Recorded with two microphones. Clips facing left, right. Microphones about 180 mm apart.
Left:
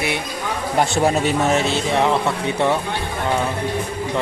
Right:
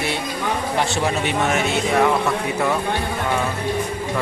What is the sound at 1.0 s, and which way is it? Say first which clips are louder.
A man's voice: left 3 dB; 35° left (ahead or behind).